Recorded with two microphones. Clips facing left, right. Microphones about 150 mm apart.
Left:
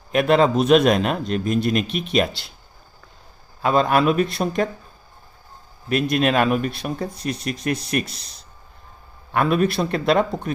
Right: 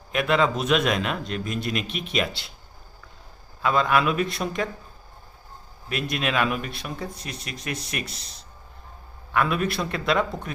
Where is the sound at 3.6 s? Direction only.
35° left (ahead or behind).